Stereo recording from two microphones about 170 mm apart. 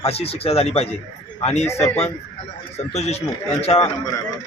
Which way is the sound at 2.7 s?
40° left (ahead or behind).